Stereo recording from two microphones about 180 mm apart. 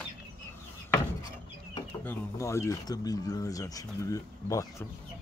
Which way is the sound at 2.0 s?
15° left (ahead or behind).